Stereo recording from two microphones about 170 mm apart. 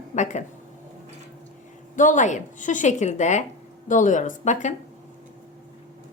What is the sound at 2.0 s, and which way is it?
A woman's voice, 50° left (ahead or behind).